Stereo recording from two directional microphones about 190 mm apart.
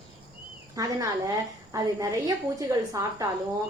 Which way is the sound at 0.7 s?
20° right (ahead or behind).